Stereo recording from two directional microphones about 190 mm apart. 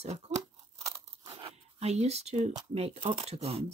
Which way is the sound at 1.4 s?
35° right (ahead or behind).